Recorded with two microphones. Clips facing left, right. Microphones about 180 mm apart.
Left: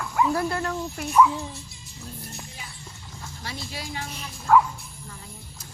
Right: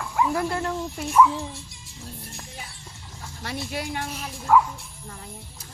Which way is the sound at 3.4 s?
55° right (ahead or behind).